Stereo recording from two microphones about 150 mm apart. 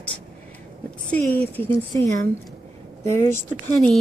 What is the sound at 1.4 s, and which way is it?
Speech, 10° left (ahead or behind).